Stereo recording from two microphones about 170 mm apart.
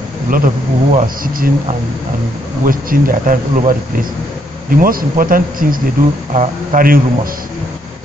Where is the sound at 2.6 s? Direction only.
55° right (ahead or behind).